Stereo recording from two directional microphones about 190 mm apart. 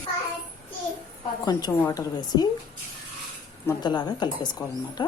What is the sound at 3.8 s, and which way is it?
A woman's voice, 20° left (ahead or behind).